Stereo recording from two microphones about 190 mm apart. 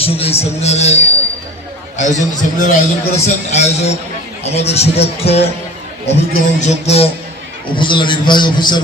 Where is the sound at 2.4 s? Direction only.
40° left (ahead or behind).